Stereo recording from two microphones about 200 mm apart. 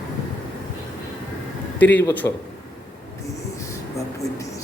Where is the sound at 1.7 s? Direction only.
10° left (ahead or behind).